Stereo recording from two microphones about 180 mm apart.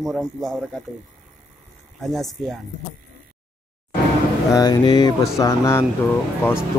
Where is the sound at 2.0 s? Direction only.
Centre (ahead or behind).